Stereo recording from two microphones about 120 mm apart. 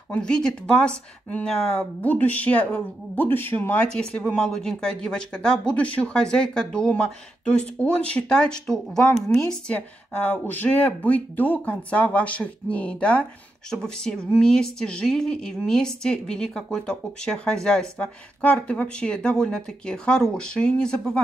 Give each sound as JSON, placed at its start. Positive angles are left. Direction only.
{"t": 0.1, "sound": "speech", "side_deg": 5}